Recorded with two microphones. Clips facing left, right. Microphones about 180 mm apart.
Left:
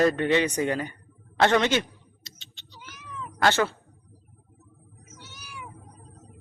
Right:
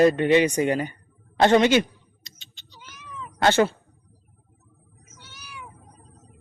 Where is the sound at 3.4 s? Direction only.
20° right (ahead or behind).